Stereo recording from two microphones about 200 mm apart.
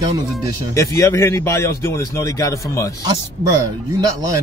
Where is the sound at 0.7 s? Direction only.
15° left (ahead or behind).